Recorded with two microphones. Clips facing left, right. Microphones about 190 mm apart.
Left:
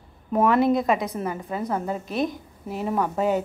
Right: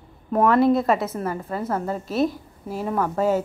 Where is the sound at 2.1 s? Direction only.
5° right (ahead or behind).